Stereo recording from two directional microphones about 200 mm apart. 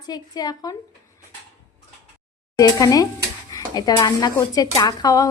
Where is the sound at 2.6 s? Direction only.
20° left (ahead or behind).